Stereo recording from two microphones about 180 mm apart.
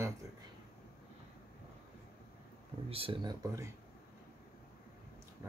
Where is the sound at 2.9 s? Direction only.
30° right (ahead or behind).